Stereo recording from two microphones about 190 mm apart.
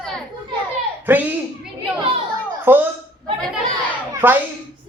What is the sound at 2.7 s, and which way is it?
Speech, 10° right (ahead or behind).